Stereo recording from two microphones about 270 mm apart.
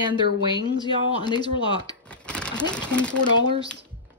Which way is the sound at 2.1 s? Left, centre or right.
Centre.